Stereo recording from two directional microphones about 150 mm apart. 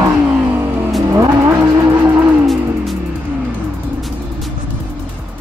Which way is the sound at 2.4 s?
Centre (ahead or behind).